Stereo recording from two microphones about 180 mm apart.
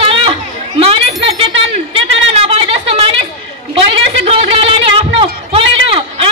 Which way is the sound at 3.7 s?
30° right (ahead or behind).